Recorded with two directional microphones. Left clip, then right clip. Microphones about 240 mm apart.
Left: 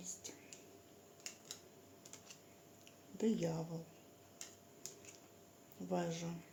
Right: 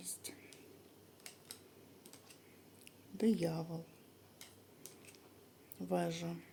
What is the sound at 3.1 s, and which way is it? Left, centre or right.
Speech, right.